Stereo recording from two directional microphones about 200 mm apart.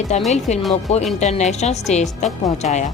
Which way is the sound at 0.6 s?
Centre (ahead or behind).